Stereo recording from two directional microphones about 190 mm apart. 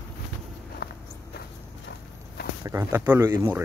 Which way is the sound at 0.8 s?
55° left (ahead or behind).